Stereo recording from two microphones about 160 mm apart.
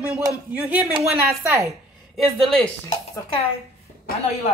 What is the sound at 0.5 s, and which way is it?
Speech, 10° right (ahead or behind).